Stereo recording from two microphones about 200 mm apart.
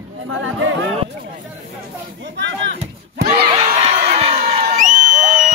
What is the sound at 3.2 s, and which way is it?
Crowd, 30° right (ahead or behind).